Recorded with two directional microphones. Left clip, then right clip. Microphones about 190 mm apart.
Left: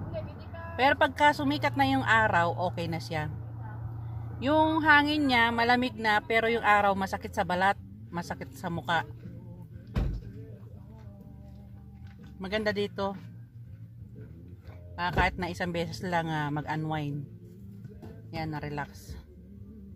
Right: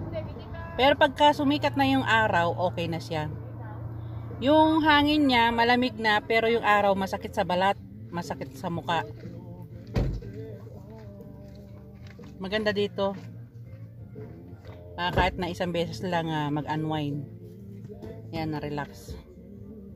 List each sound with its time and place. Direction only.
0.7 s speech: centre (ahead or behind)
4.4 s speech: centre (ahead or behind)
12.4 s speech: 5° left (ahead or behind)
15.0 s speech: centre (ahead or behind)
18.3 s speech: centre (ahead or behind)